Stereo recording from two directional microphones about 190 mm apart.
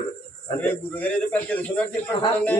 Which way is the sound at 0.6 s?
10° left (ahead or behind).